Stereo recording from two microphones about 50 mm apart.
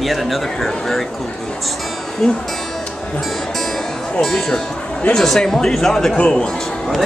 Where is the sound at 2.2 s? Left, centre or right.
Centre.